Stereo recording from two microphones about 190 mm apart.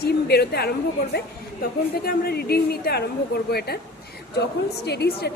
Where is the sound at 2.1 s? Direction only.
55° left (ahead or behind).